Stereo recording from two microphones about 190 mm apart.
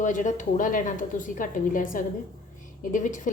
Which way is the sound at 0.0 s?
40° left (ahead or behind).